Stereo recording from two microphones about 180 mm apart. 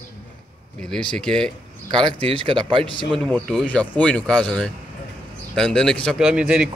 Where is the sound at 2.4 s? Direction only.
30° right (ahead or behind).